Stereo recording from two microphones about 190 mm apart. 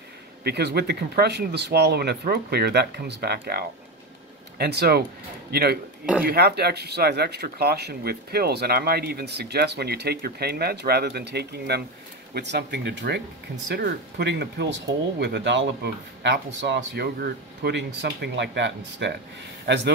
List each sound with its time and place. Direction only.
0.4 s a man's voice: 60° right (ahead or behind)